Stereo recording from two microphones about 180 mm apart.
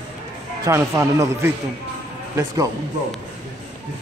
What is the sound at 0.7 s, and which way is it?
Speech, 15° right (ahead or behind).